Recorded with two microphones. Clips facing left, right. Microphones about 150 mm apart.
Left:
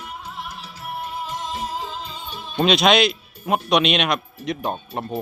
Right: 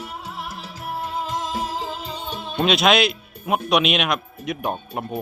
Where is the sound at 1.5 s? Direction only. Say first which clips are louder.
Right 2 dB; 90° right; by 2.6 s 65° right (ahead or behind).